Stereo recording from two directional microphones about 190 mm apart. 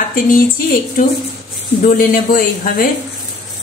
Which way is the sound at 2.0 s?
50° left (ahead or behind).